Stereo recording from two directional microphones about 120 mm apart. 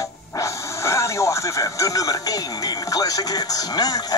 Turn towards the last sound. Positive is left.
turn(degrees=35)  # may be behind; listen again after turning